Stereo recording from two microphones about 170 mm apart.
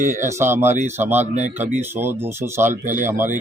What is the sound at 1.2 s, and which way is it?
Speech, 40° right (ahead or behind).